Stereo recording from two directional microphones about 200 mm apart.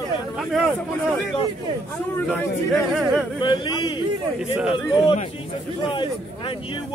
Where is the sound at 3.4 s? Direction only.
25° left (ahead or behind).